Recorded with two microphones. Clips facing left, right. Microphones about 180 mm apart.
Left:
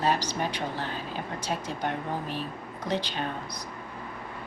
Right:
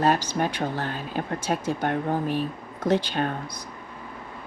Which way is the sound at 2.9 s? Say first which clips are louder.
Right 7 dB; 50° right (ahead or behind).